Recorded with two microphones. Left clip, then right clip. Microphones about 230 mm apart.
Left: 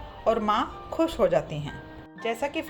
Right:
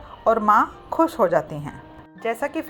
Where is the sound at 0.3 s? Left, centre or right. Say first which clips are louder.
Right 7 dB; centre.